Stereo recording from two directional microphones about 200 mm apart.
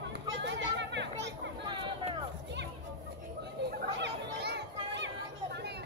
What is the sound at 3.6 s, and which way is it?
Chatter, 55° right (ahead or behind).